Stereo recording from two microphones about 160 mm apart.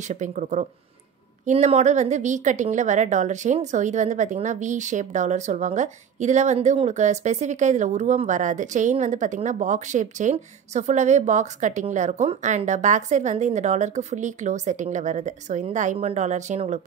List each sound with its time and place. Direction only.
0.0 s a woman's voice: 50° right (ahead or behind)